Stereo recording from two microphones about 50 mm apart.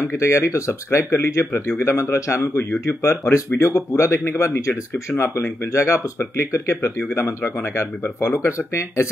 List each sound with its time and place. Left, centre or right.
0.1 s speech: left
0.8 s speech: left
4.2 s speech: left
4.6 s speech: left